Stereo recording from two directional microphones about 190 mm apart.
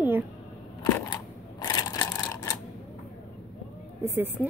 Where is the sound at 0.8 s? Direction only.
20° left (ahead or behind).